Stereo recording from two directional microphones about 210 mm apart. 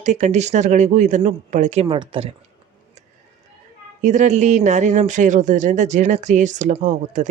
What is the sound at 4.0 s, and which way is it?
Speech, 35° right (ahead or behind).